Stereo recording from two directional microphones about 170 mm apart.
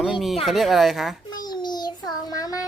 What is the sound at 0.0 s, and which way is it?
A child's voice, centre (ahead or behind).